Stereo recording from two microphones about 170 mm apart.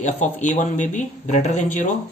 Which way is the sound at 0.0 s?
45° left (ahead or behind).